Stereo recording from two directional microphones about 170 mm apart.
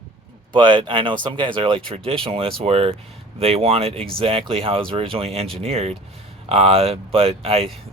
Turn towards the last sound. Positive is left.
turn(degrees=-35)  # may be behind; listen again after turning